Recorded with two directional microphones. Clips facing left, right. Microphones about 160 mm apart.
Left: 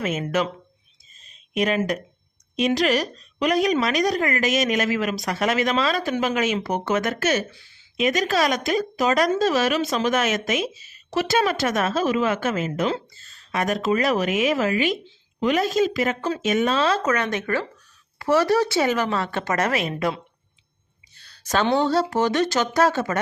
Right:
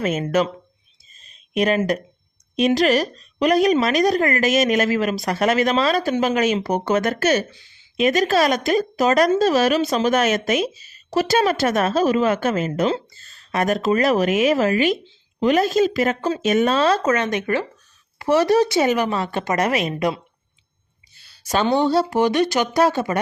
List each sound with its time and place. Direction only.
0.0 s a woman's voice: 40° right (ahead or behind)
1.5 s a woman's voice: 35° right (ahead or behind)
7.5 s speech: 20° right (ahead or behind)
7.9 s a woman's voice: 35° right (ahead or behind)
17.0 s speech: 25° right (ahead or behind)
21.2 s speech: 10° right (ahead or behind)